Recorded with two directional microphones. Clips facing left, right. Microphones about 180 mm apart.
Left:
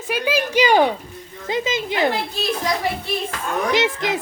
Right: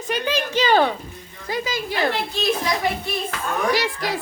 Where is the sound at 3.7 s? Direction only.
20° left (ahead or behind).